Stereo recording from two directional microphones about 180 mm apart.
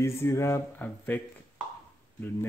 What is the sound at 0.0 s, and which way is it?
Speech, 15° left (ahead or behind).